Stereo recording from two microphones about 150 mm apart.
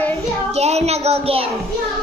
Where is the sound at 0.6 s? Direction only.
45° right (ahead or behind).